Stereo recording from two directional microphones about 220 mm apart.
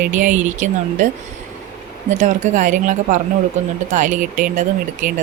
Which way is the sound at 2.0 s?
35° right (ahead or behind).